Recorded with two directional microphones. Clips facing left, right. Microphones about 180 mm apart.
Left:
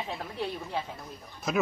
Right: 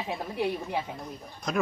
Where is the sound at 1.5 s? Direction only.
5° left (ahead or behind).